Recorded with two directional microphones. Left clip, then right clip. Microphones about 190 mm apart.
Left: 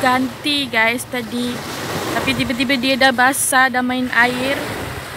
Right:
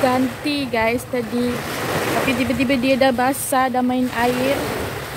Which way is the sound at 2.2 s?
35° left (ahead or behind).